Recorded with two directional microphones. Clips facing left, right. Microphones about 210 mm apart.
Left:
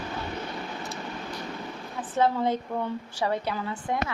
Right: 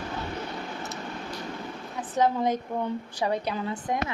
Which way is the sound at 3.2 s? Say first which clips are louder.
Even; 15° right (ahead or behind).